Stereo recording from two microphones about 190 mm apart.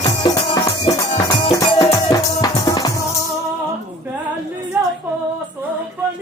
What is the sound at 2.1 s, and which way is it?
Music, 20° left (ahead or behind).